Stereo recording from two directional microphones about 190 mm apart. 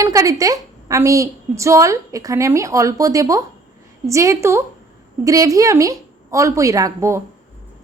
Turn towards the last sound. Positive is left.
turn(degrees=-15)  # may be behind; listen again after turning